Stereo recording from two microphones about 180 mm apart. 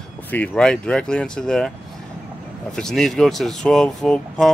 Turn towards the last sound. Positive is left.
turn(degrees=5)  # may be behind; listen again after turning